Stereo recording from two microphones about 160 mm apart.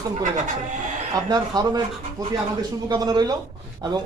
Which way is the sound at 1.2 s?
25° right (ahead or behind).